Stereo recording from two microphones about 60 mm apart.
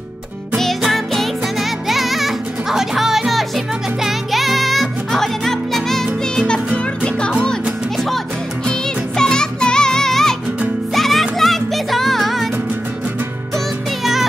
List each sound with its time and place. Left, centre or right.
0.6 s music: centre
8.6 s music: centre